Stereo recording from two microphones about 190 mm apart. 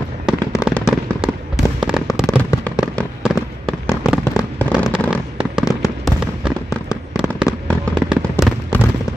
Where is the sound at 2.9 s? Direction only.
Centre (ahead or behind).